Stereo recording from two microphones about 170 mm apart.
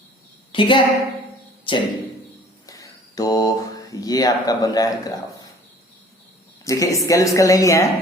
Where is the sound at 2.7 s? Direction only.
20° left (ahead or behind).